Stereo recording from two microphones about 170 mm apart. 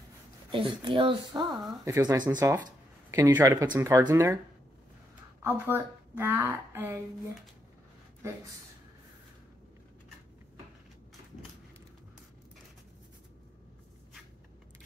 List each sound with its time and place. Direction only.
0.5 s a woman's voice: 30° right (ahead or behind)
5.4 s a woman's voice: 15° right (ahead or behind)